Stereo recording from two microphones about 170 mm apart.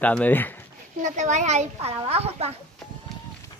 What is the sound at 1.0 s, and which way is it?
Speech, 45° right (ahead or behind).